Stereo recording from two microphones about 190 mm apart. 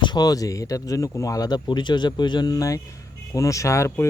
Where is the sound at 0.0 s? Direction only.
20° left (ahead or behind).